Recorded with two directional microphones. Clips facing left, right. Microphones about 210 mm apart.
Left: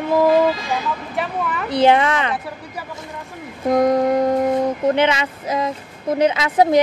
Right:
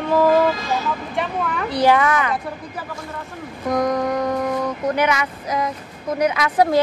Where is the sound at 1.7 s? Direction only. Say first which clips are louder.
Left 2 dB; 20° left (ahead or behind).